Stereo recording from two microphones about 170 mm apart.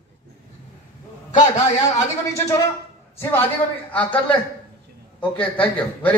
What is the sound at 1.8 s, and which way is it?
Speech, 15° left (ahead or behind).